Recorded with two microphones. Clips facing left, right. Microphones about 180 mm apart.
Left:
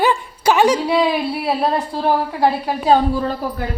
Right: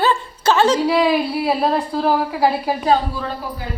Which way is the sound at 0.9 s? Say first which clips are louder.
Right 1 dB; centre (ahead or behind).